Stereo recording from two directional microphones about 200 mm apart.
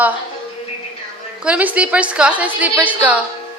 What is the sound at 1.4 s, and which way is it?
A woman's voice, 5° right (ahead or behind).